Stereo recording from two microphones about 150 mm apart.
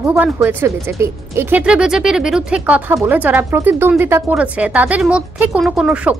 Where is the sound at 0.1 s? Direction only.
15° right (ahead or behind).